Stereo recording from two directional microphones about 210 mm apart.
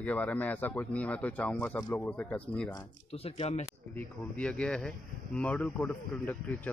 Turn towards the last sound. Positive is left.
turn(degrees=10)  # may be behind; listen again after turning